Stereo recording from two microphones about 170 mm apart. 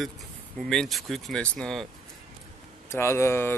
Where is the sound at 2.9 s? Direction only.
15° left (ahead or behind).